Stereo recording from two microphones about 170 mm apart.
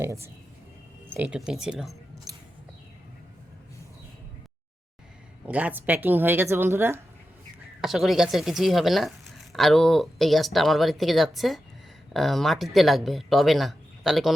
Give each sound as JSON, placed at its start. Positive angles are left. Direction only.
{"t": 0.0, "sound": "a woman's voice", "side_deg": -15}
{"t": 5.5, "sound": "a woman's voice", "side_deg": -10}
{"t": 7.8, "sound": "speech", "side_deg": 0}